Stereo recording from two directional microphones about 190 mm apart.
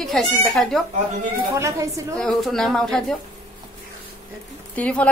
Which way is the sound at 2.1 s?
5° left (ahead or behind).